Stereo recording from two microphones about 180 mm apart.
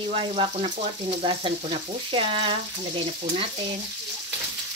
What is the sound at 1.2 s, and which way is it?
Frying, 30° right (ahead or behind).